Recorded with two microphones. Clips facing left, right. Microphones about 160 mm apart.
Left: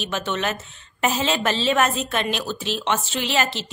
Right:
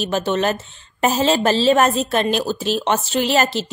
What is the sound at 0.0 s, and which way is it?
A woman's voice, 35° right (ahead or behind).